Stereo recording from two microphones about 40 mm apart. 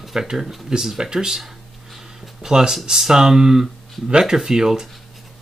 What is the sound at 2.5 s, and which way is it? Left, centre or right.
Speech, centre.